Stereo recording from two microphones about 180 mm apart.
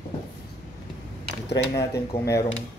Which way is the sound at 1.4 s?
70° left (ahead or behind).